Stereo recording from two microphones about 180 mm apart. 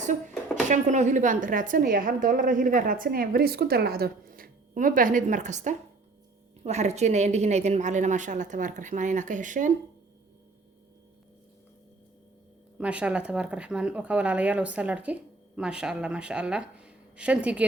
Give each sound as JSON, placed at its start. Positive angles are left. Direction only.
{"t": 0.0, "sound": "a sound", "side_deg": -40}
{"t": 0.7, "sound": "a woman's voice", "side_deg": -40}
{"t": 12.8, "sound": "speech", "side_deg": -5}